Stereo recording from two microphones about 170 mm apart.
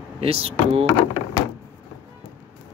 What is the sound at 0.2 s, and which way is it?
Speech, 35° right (ahead or behind).